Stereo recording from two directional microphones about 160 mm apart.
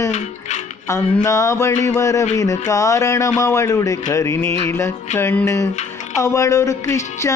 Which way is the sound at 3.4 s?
20° left (ahead or behind).